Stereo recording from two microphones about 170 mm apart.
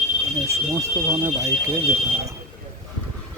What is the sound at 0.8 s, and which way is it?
Speech, 15° right (ahead or behind).